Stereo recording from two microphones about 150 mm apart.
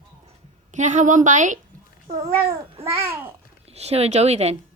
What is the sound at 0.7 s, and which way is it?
Speech, 55° right (ahead or behind).